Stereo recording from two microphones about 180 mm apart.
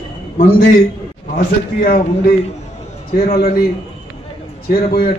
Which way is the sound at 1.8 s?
55° left (ahead or behind).